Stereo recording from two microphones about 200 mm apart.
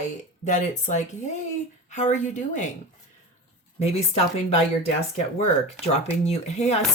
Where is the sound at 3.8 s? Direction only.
30° left (ahead or behind).